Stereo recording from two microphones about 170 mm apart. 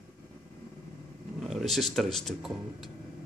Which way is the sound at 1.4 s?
Centre (ahead or behind).